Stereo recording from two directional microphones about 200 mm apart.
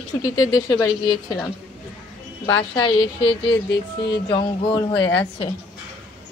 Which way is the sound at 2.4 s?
25° left (ahead or behind).